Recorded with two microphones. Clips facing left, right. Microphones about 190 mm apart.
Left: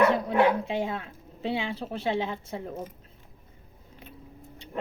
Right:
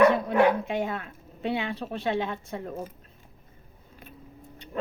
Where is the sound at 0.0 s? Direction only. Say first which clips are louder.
Right 2 dB; 25° left (ahead or behind).